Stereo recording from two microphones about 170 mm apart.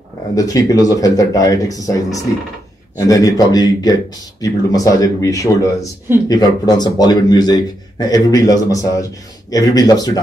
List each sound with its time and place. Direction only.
0.4 s speech: 20° left (ahead or behind)